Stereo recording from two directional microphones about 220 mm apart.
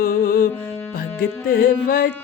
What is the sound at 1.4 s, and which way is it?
Music, 40° left (ahead or behind).